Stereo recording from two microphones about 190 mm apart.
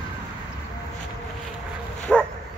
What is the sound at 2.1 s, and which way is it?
Bow-wow, 5° left (ahead or behind).